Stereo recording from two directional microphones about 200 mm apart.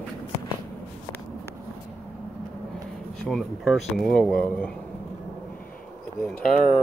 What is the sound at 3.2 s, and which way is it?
Speech, centre (ahead or behind).